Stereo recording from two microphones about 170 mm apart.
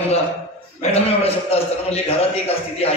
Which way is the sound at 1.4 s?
35° left (ahead or behind).